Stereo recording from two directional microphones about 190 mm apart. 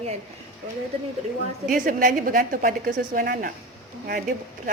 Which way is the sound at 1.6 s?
45° right (ahead or behind).